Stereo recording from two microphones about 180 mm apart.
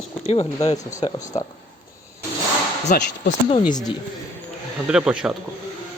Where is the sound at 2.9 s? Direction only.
55° left (ahead or behind).